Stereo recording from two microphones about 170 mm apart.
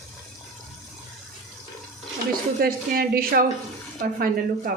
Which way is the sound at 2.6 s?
60° right (ahead or behind).